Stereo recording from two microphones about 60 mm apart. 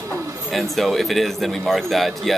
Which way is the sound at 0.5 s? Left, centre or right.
Centre.